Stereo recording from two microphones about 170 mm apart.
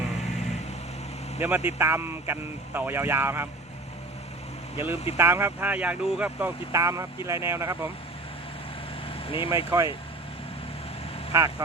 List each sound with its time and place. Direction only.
1.4 s speech: 10° right (ahead or behind)
5.1 s speech: 15° right (ahead or behind)
6.7 s speech: 20° right (ahead or behind)
9.0 s vehicle: 30° left (ahead or behind)
9.6 s speech: 15° right (ahead or behind)
11.3 s speech: 15° right (ahead or behind)